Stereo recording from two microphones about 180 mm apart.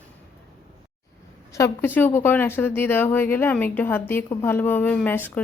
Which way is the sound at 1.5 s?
15° left (ahead or behind).